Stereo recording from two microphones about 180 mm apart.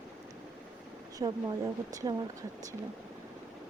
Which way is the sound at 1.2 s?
20° right (ahead or behind).